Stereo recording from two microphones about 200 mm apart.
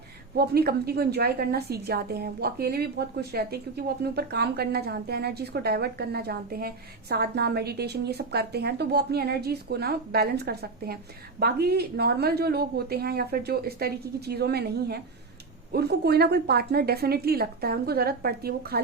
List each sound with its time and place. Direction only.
0.3 s a woman's voice: 50° right (ahead or behind)